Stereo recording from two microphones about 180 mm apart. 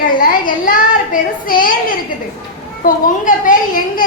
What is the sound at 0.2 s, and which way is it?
A woman's voice, 50° left (ahead or behind).